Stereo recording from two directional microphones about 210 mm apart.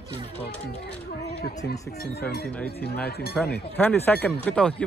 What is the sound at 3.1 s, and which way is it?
Speech, 50° left (ahead or behind).